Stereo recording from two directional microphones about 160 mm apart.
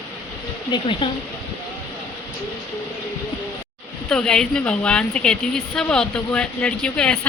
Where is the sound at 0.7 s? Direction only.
30° left (ahead or behind).